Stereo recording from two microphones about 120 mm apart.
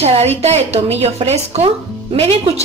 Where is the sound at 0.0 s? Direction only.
60° right (ahead or behind).